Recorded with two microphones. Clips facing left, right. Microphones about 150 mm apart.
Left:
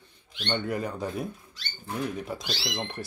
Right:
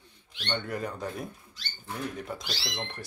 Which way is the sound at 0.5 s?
5° left (ahead or behind).